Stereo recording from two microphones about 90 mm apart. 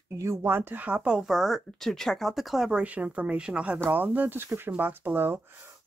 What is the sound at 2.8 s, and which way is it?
Speech, 15° right (ahead or behind).